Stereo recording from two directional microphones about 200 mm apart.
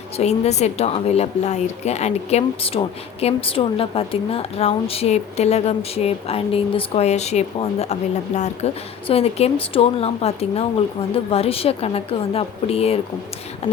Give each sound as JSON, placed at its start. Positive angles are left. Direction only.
{"t": 0.2, "sound": "a woman's voice", "side_deg": 35}